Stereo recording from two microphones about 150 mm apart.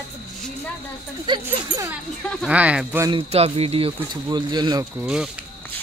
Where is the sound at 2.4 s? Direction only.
10° right (ahead or behind).